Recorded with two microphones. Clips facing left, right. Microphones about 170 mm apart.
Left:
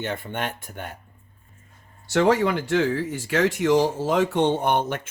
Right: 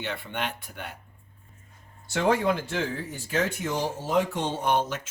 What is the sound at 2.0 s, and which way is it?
Speech, 75° left (ahead or behind).